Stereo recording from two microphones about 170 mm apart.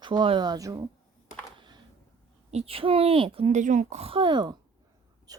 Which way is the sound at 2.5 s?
35° right (ahead or behind).